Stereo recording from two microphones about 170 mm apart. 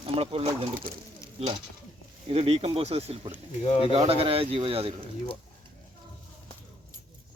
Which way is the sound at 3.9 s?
35° right (ahead or behind).